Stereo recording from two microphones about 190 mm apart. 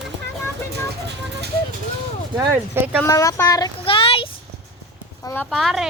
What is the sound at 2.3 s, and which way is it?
Speech, 20° right (ahead or behind).